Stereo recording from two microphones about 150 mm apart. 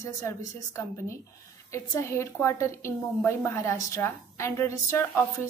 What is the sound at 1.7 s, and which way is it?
A woman's voice, 20° left (ahead or behind).